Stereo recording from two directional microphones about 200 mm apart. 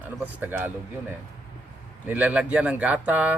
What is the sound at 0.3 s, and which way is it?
Speech, 10° right (ahead or behind).